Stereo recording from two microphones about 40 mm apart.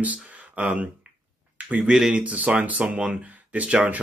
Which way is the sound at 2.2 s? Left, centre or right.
Right.